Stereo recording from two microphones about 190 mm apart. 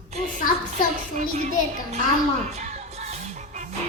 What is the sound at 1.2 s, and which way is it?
Speech, 35° right (ahead or behind).